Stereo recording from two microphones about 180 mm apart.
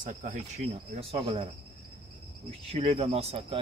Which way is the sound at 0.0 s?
45° right (ahead or behind).